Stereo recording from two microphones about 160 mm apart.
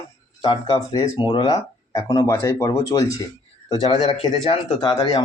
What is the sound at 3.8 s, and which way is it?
Speech, 35° left (ahead or behind).